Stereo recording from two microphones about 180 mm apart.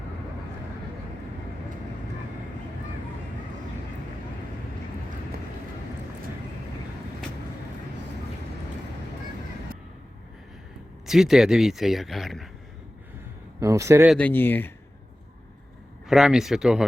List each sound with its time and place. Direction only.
11.0 s speech: centre (ahead or behind)
13.6 s speech: 15° right (ahead or behind)
14.1 s speech: 5° left (ahead or behind)
16.0 s speech: centre (ahead or behind)